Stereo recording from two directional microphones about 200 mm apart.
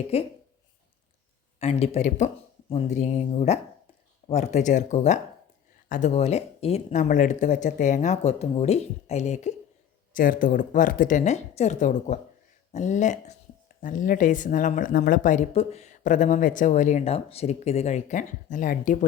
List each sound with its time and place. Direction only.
0.1 s a woman's voice: 30° left (ahead or behind)
1.5 s a woman's voice: 30° left (ahead or behind)